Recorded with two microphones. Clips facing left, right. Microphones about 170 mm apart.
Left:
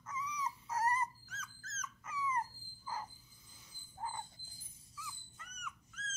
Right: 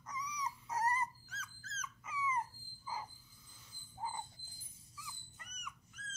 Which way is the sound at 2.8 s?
5° right (ahead or behind).